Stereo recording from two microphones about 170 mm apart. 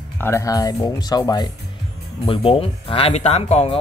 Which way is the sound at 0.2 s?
15° left (ahead or behind).